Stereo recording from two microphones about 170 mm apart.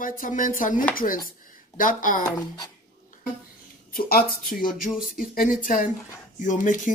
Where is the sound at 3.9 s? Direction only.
60° left (ahead or behind).